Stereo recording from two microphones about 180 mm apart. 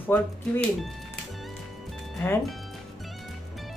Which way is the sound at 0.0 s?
10° left (ahead or behind).